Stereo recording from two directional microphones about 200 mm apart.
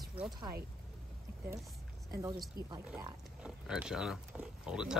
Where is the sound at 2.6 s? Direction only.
20° right (ahead or behind).